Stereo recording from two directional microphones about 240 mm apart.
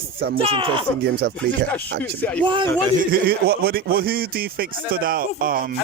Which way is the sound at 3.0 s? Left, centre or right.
Right.